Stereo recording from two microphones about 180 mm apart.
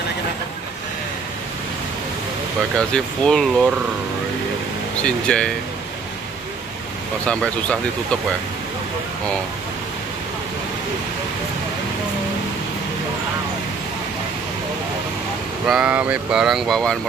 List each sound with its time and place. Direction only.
2.9 s speech: 5° left (ahead or behind)
5.0 s speech: 5° left (ahead or behind)
7.2 s speech: 5° left (ahead or behind)
15.6 s speech: 5° right (ahead or behind)